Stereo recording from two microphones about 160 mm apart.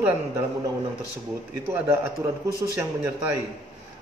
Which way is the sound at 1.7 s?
15° right (ahead or behind).